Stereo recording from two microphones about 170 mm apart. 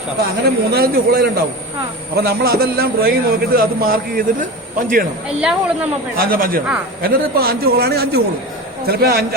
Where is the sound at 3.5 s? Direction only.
60° right (ahead or behind).